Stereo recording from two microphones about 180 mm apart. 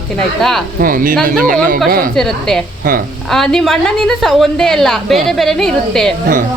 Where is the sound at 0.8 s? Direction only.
50° right (ahead or behind).